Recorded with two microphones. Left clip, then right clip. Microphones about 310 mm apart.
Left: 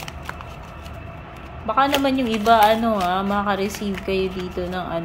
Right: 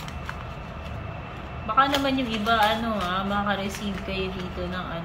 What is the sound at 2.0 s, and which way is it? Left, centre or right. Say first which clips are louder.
Speech: left 6 dB; centre.